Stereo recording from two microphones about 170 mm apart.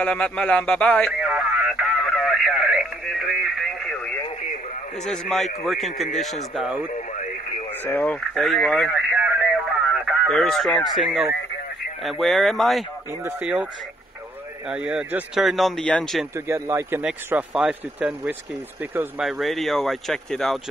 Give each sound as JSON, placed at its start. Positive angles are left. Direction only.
{"t": 0.0, "sound": "speech", "side_deg": 5}
{"t": 1.2, "sound": "radio", "side_deg": -5}
{"t": 5.0, "sound": "speech", "side_deg": 5}
{"t": 6.9, "sound": "radio", "side_deg": 45}
{"t": 7.8, "sound": "speech", "side_deg": 10}
{"t": 8.9, "sound": "radio", "side_deg": -10}
{"t": 12.0, "sound": "speech", "side_deg": 0}
{"t": 14.7, "sound": "speech", "side_deg": -5}
{"t": 16.3, "sound": "speech", "side_deg": -15}
{"t": 17.0, "sound": "speech", "side_deg": -5}